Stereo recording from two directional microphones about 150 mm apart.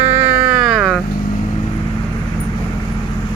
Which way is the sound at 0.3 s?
10° right (ahead or behind).